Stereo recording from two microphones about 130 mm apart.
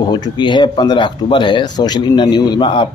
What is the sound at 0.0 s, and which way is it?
Speech, 35° left (ahead or behind).